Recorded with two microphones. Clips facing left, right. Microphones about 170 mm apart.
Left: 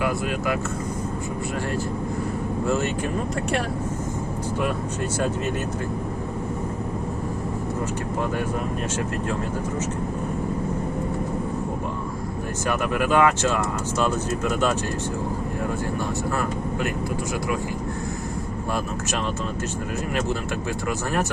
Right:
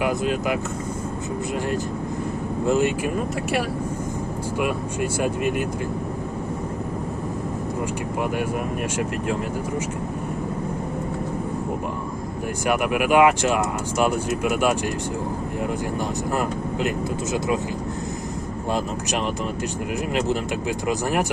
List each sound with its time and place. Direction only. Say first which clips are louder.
0.0 s speech: right 2 dB; 20° right (ahead or behind)
2.6 s speech: right 5 dB; 15° right (ahead or behind)
4.6 s speech: right 3 dB; 15° right (ahead or behind)
12.6 s speech: right 2 dB; 15° right (ahead or behind)
16.3 s speech: right 2 dB; 20° right (ahead or behind)
18.7 s speech: right 3 dB; 15° right (ahead or behind)